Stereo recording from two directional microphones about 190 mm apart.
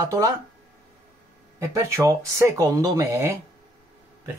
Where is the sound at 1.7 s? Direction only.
15° right (ahead or behind).